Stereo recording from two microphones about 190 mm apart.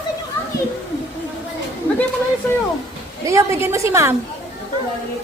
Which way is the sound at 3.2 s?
15° right (ahead or behind).